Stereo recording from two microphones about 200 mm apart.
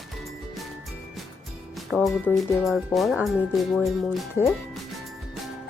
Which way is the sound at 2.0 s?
5° left (ahead or behind).